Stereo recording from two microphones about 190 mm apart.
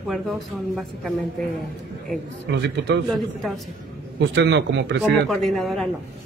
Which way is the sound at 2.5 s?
65° right (ahead or behind).